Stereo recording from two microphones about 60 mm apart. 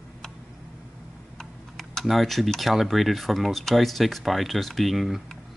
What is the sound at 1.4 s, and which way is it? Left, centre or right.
Typing, centre.